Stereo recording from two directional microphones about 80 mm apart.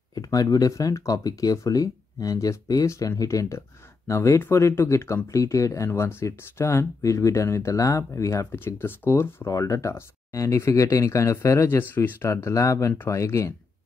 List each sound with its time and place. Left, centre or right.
0.1 s speech: left
11.9 s speech: left
12.3 s speech: left